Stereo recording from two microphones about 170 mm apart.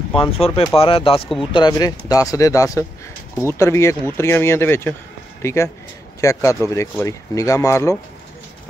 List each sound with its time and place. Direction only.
0.1 s speech: 35° left (ahead or behind)